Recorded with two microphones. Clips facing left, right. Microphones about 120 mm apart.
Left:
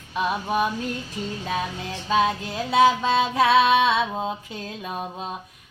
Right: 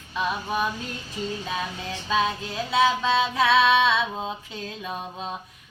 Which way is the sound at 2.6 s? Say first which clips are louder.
Left 3 dB; 45° left (ahead or behind).